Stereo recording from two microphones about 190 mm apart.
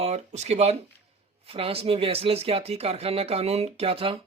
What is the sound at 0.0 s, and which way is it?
Speech, 35° right (ahead or behind).